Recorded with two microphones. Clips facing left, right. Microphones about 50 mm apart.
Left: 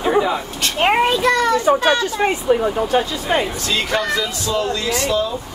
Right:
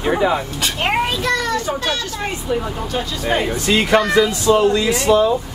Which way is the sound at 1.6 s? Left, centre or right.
Left.